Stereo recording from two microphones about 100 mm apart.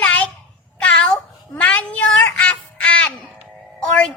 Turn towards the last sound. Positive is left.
turn(degrees=10)  # may be behind; listen again after turning